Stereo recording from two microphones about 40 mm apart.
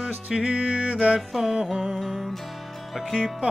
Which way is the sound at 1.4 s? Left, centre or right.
Centre.